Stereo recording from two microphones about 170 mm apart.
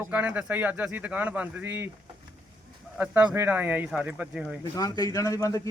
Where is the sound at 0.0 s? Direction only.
10° right (ahead or behind).